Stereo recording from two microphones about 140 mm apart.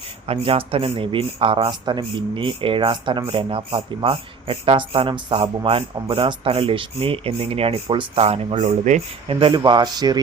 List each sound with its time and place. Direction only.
0.3 s speech: 45° right (ahead or behind)
9.3 s speech: 35° right (ahead or behind)